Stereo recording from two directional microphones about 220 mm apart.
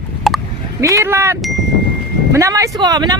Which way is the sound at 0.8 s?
15° right (ahead or behind).